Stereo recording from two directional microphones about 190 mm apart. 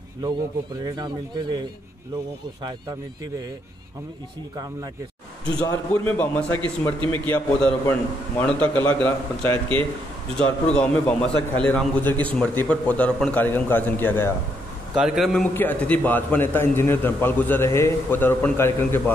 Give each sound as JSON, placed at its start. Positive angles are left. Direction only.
{"t": 0.8, "sound": "speech", "side_deg": -20}
{"t": 5.6, "sound": "a man's voice", "side_deg": 5}
{"t": 15.0, "sound": "a man's voice", "side_deg": 0}